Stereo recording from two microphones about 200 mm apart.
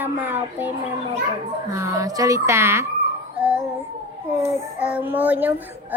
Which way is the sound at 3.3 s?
5° right (ahead or behind).